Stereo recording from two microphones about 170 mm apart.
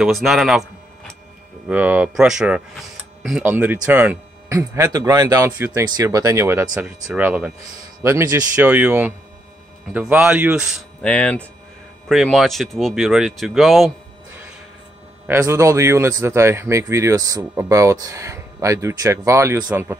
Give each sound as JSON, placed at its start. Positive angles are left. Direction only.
{"t": 0.0, "sound": "speech", "side_deg": 0}
{"t": 15.2, "sound": "speech", "side_deg": -15}